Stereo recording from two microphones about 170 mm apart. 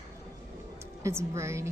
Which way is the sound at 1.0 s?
15° right (ahead or behind).